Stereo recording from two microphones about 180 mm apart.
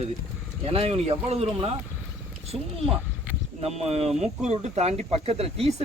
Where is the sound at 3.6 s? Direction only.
35° right (ahead or behind).